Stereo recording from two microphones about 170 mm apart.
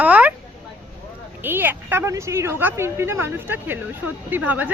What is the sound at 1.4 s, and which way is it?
Speech, 10° right (ahead or behind).